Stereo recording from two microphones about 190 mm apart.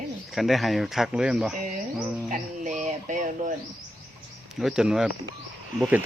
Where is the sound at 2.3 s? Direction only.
40° right (ahead or behind).